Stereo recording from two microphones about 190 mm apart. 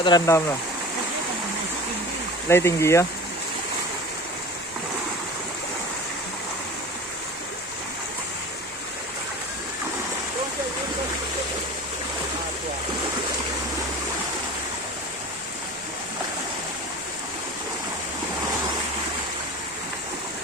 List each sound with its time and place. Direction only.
0.0 s speech: 20° left (ahead or behind)
2.5 s speech: 15° left (ahead or behind)